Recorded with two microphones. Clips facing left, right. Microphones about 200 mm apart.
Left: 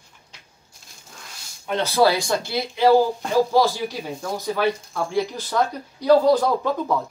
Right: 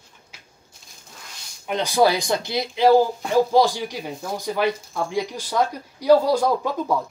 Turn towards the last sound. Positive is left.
turn(degrees=-10)  # may be behind; listen again after turning